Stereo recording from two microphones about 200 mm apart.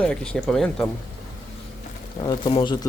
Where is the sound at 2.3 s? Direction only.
25° left (ahead or behind).